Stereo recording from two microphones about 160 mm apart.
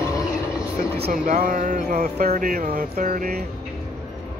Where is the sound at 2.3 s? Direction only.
60° right (ahead or behind).